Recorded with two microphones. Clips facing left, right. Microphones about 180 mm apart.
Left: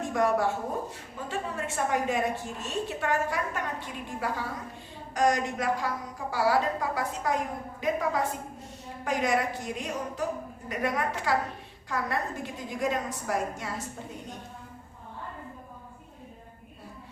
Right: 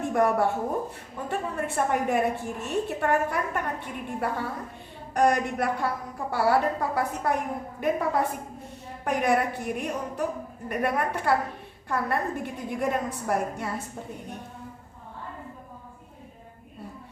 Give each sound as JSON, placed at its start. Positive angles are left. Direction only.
{"t": 0.1, "sound": "a woman's voice", "side_deg": -60}